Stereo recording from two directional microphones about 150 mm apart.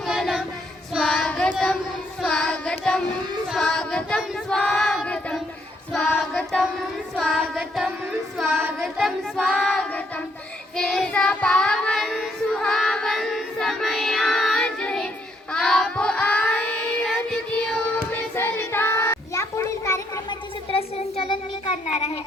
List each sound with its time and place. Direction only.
0.1 s child singing: centre (ahead or behind)
1.5 s a sound: 5° left (ahead or behind)
2.2 s child singing: 5° left (ahead or behind)
3.5 s choir: 5° left (ahead or behind)
6.1 s child singing: 5° left (ahead or behind)
20.7 s child singing: 35° left (ahead or behind)